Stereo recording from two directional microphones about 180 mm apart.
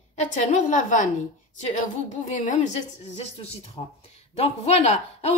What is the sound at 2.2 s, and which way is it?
A woman's voice, 45° left (ahead or behind).